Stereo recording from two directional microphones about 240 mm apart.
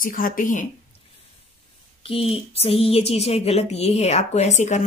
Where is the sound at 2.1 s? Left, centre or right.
Left.